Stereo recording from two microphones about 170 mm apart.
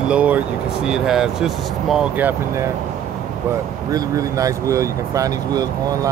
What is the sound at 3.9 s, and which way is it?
Speech, 20° right (ahead or behind).